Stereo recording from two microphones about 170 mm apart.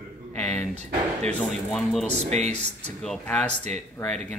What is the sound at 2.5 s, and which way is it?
Speech, 5° left (ahead or behind).